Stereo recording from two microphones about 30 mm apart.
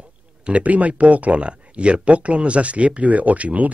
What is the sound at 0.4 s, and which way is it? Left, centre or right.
Speech, right.